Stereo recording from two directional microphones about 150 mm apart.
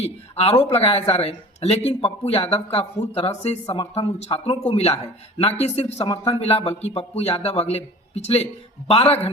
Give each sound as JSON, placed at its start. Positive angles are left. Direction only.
{"t": 0.0, "sound": "a man's voice", "side_deg": 45}